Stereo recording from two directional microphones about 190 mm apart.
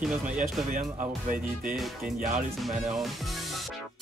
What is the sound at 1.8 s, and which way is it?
Speech, centre (ahead or behind).